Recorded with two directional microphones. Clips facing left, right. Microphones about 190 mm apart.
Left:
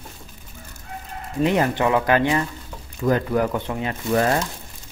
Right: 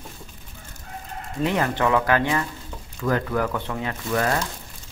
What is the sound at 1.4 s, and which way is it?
Speech, 20° left (ahead or behind).